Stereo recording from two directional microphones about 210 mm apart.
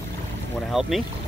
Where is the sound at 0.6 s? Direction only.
Centre (ahead or behind).